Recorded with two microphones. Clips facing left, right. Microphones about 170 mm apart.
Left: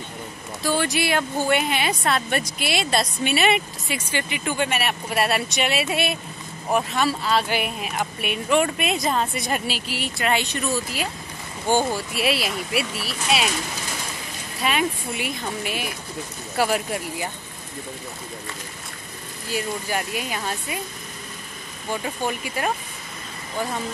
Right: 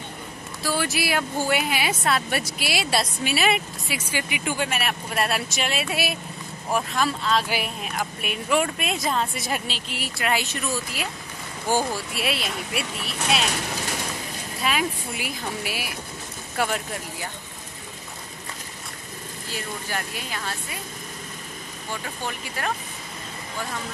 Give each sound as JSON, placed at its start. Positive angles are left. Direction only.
{"t": 0.6, "sound": "a woman's voice", "side_deg": -5}
{"t": 11.6, "sound": "speech", "side_deg": 25}
{"t": 11.9, "sound": "a woman's voice", "side_deg": 0}
{"t": 14.6, "sound": "a woman's voice", "side_deg": 0}
{"t": 16.5, "sound": "speech", "side_deg": 5}
{"t": 19.5, "sound": "speech", "side_deg": 15}
{"t": 22.0, "sound": "speech", "side_deg": 15}